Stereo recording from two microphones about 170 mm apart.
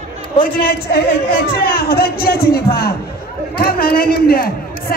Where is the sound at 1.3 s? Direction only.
60° left (ahead or behind).